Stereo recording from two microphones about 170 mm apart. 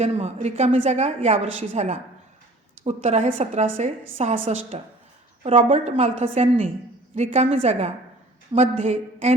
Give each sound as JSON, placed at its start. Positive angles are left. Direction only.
{"t": 0.0, "sound": "a woman's voice", "side_deg": -40}